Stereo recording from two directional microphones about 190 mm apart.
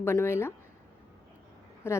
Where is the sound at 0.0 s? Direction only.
15° left (ahead or behind).